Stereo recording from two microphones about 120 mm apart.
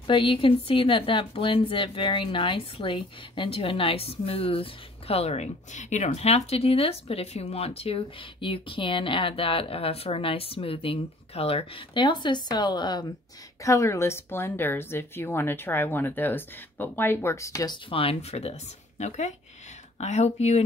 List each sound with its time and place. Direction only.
0.0 s a woman's voice: 45° left (ahead or behind)
13.6 s speech: 25° left (ahead or behind)
17.8 s speech: 50° left (ahead or behind)